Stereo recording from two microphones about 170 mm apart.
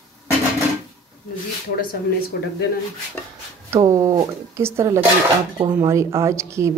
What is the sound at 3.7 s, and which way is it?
A woman's voice, 20° right (ahead or behind).